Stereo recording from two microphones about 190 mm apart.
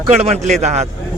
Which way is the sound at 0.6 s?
35° right (ahead or behind).